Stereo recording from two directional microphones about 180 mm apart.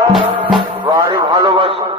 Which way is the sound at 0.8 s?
25° right (ahead or behind).